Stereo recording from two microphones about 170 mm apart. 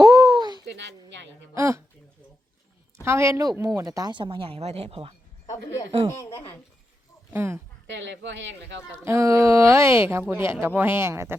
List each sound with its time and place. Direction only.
0.0 s a sound: 20° right (ahead or behind)
0.7 s a sound: 90° right
1.5 s speech: 15° right (ahead or behind)
3.0 s speech: 15° right (ahead or behind); by 5.1 s 35° right (ahead or behind)
6.3 s a child's voice: 15° left (ahead or behind)
7.3 s speech: 15° right (ahead or behind)
7.9 s speech: 90° right
9.0 s speech: 15° right (ahead or behind)